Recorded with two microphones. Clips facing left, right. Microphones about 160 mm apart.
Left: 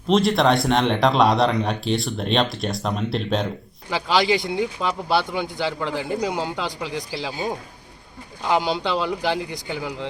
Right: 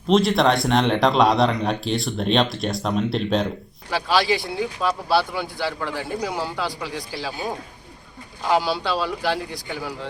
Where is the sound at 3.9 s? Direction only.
15° left (ahead or behind).